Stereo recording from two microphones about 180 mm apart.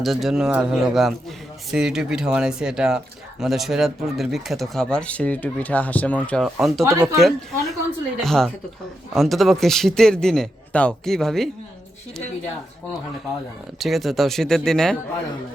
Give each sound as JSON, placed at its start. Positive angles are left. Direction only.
{"t": 0.0, "sound": "speech", "side_deg": 0}
{"t": 6.8, "sound": "speech", "side_deg": -15}
{"t": 7.2, "sound": "speech", "side_deg": 0}
{"t": 13.7, "sound": "speech", "side_deg": 0}